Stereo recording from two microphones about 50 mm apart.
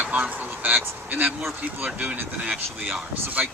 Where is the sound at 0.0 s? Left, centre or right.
Right.